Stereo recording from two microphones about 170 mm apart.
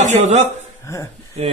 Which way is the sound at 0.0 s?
40° right (ahead or behind).